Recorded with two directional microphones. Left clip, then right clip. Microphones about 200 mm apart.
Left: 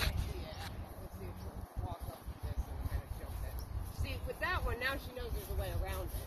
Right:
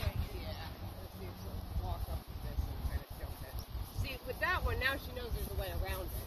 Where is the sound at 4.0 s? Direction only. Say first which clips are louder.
Right 2 dB; 10° right (ahead or behind).